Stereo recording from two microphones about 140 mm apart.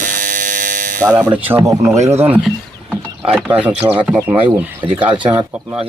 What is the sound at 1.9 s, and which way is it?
Speech, 55° right (ahead or behind).